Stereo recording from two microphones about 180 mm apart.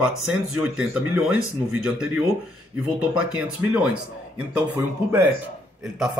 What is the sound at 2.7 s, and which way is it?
A man's voice, 5° right (ahead or behind).